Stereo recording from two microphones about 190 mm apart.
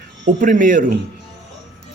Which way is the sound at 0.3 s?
45° right (ahead or behind).